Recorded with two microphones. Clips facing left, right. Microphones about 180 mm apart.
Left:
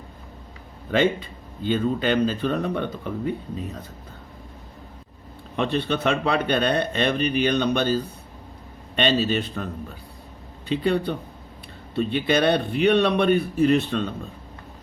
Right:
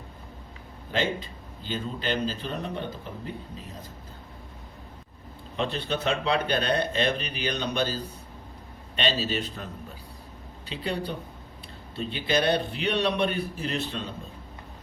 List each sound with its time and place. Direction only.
0.9 s speech: 60° left (ahead or behind)
5.5 s speech: 60° left (ahead or behind)
9.0 s speech: 55° left (ahead or behind)
10.7 s speech: 55° left (ahead or behind)